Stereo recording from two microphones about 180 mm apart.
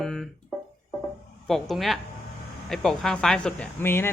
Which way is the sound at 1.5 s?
Centre (ahead or behind).